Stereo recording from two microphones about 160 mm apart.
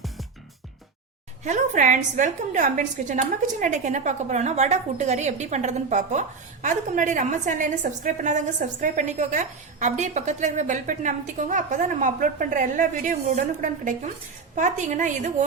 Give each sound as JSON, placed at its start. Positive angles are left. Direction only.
{"t": 1.5, "sound": "a woman's voice", "side_deg": -50}